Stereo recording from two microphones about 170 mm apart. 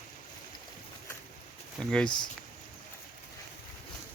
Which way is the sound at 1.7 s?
5° left (ahead or behind).